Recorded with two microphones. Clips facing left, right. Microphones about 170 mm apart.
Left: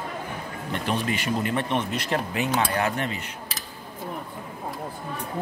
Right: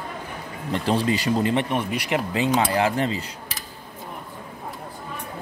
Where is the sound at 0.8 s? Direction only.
30° right (ahead or behind).